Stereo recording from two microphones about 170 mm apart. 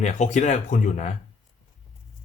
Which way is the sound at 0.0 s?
45° left (ahead or behind).